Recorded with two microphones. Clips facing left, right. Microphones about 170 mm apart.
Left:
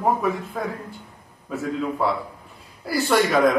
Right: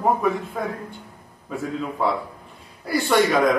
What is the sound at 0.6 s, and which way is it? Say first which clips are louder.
Speech: right 1 dB; centre (ahead or behind).